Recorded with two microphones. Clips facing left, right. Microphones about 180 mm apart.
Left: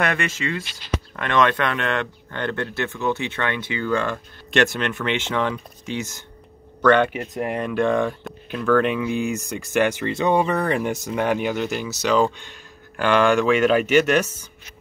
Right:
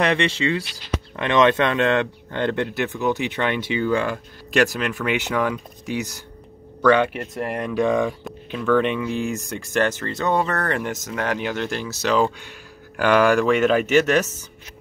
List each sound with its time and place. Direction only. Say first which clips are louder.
0.1 s speech: right 4 dB; 30° right (ahead or behind)
1.1 s speech: right 3 dB; 20° right (ahead or behind); by 9.8 s centre (ahead or behind)
9.8 s speech: left 2 dB; 10° left (ahead or behind)